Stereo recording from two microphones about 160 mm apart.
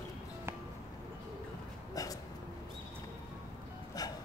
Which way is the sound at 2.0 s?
20° left (ahead or behind).